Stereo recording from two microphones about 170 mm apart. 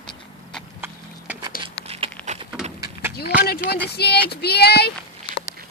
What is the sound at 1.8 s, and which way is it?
Crumpling, 35° right (ahead or behind).